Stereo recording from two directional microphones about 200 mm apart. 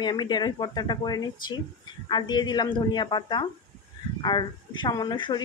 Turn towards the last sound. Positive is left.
turn(degrees=20)  # may be behind; listen again after turning